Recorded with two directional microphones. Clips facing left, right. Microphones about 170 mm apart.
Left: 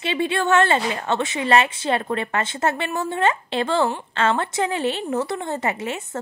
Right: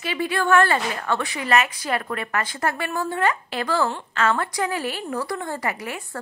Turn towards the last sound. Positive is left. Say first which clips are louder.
# left 4 dB
turn(degrees=25)  # may be behind; listen again after turning